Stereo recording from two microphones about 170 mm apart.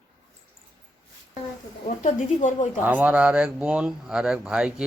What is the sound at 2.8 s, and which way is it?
Speech, 10° right (ahead or behind).